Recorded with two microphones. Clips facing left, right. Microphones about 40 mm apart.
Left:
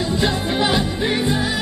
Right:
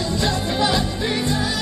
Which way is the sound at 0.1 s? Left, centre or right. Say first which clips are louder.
Left 2 dB; centre.